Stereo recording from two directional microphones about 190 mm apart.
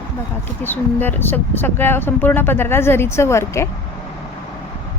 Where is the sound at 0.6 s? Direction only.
10° left (ahead or behind).